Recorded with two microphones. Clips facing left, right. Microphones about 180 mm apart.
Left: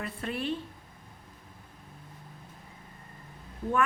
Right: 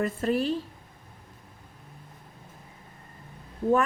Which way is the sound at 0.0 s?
40° right (ahead or behind).